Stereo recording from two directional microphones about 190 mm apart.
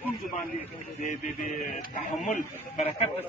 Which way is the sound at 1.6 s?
45° left (ahead or behind).